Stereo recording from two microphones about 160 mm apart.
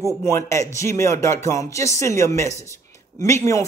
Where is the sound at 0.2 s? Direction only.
15° left (ahead or behind).